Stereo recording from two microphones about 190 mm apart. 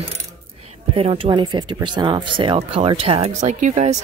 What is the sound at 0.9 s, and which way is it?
Speech, 30° right (ahead or behind).